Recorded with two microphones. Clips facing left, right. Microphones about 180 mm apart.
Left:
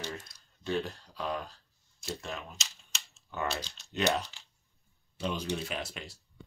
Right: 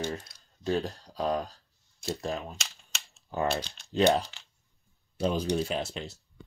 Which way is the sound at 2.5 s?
55° right (ahead or behind).